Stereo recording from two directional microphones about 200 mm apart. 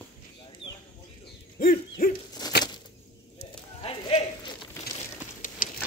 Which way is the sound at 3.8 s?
25° left (ahead or behind).